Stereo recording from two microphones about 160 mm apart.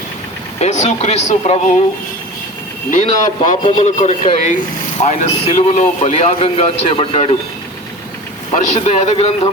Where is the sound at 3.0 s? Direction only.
50° left (ahead or behind).